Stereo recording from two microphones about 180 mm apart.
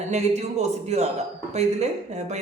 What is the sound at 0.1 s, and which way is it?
Speech, 40° right (ahead or behind).